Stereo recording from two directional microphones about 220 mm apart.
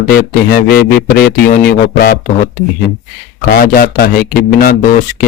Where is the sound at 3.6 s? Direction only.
45° left (ahead or behind).